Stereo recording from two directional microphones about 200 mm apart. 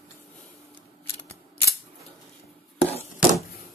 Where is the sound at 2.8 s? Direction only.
30° left (ahead or behind).